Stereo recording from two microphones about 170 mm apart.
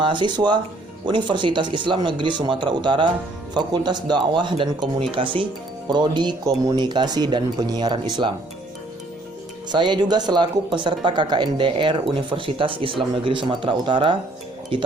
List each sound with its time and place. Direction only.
0.0 s speech: 30° right (ahead or behind)
9.7 s speech: 25° right (ahead or behind)